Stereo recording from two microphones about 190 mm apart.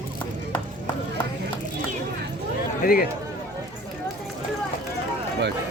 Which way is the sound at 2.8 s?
50° left (ahead or behind).